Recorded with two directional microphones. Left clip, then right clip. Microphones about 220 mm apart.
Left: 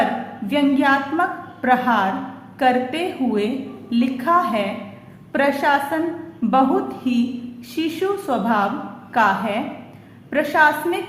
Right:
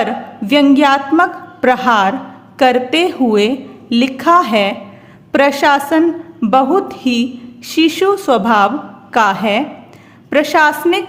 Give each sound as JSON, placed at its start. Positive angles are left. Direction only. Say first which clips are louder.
{"t": 0.5, "sound": "a woman's voice", "louder": "right 7 dB", "side_deg": -50}